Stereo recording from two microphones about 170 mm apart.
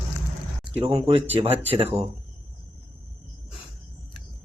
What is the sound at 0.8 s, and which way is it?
Speech, 35° right (ahead or behind).